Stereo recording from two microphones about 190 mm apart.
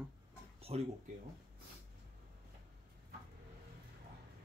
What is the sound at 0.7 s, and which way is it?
Speech, 30° right (ahead or behind).